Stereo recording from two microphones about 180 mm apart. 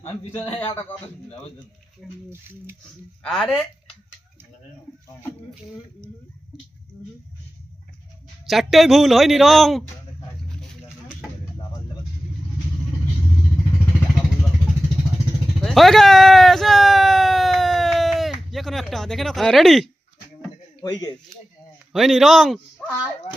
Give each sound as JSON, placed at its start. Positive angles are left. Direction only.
{"t": 2.0, "sound": "a man's voice", "side_deg": 0}
{"t": 3.2, "sound": "a man's voice", "side_deg": 5}
{"t": 8.4, "sound": "a man's voice", "side_deg": 0}
{"t": 15.6, "sound": "a sound", "side_deg": 0}
{"t": 20.8, "sound": "speech", "side_deg": 20}
{"t": 21.9, "sound": "a man's voice", "side_deg": 0}